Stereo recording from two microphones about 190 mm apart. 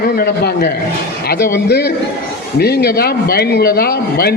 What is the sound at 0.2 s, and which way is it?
Speech, 55° left (ahead or behind).